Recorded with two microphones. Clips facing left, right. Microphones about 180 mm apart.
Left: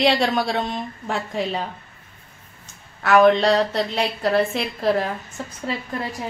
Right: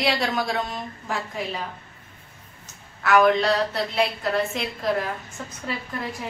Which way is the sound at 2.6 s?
30° left (ahead or behind).